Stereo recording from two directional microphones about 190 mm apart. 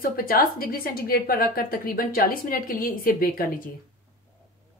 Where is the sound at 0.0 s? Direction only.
50° left (ahead or behind).